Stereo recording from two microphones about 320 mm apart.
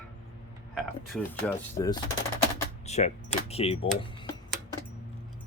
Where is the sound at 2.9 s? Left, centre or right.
Left.